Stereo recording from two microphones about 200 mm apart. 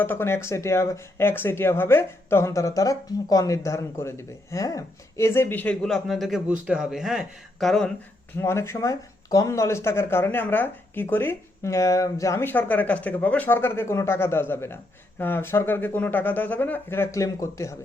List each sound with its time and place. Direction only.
0.0 s speech: 10° left (ahead or behind)
8.4 s speech: 15° left (ahead or behind)